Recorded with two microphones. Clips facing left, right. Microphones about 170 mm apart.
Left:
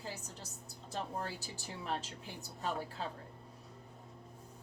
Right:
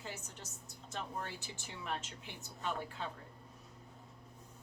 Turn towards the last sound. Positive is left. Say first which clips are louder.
# left 2 dB
turn(degrees=35)  # may be behind; listen again after turning